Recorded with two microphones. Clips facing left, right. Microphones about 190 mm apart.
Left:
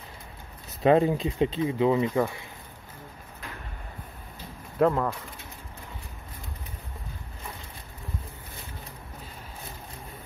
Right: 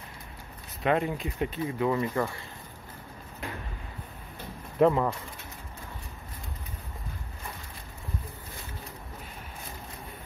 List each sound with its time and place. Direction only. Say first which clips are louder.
0.8 s speech: left 6 dB; 30° left (ahead or behind)
4.7 s speech: right 1 dB; 5° right (ahead or behind)